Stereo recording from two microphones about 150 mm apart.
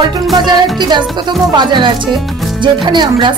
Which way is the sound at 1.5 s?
30° right (ahead or behind).